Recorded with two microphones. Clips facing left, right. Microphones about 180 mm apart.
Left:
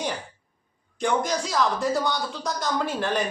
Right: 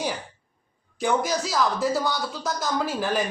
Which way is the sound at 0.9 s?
5° right (ahead or behind).